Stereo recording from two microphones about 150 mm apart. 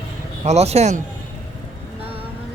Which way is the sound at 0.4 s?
45° right (ahead or behind).